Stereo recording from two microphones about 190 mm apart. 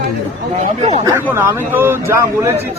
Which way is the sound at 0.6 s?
35° right (ahead or behind).